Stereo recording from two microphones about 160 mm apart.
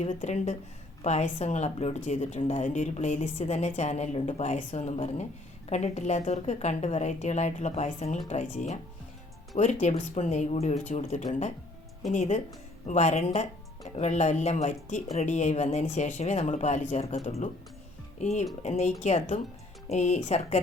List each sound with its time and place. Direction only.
0.0 s a woman's voice: 45° left (ahead or behind)